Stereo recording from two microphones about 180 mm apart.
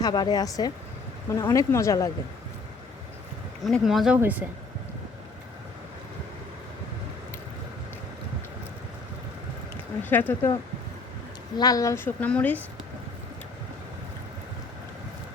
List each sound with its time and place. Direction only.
0.0 s a woman's voice: 20° left (ahead or behind)
3.6 s speech: centre (ahead or behind)
10.0 s a woman's voice: 10° left (ahead or behind)
11.5 s a woman's voice: 20° left (ahead or behind)